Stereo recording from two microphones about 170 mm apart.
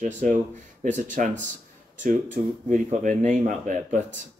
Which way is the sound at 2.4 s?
50° right (ahead or behind).